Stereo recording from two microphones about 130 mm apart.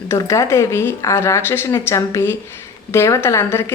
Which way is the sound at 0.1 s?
25° left (ahead or behind).